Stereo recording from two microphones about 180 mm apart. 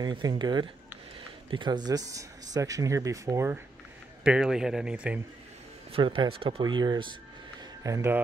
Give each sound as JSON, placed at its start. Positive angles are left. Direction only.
{"t": 0.0, "sound": "speech", "side_deg": -25}
{"t": 4.2, "sound": "a man's voice", "side_deg": -5}
{"t": 5.9, "sound": "speech", "side_deg": -30}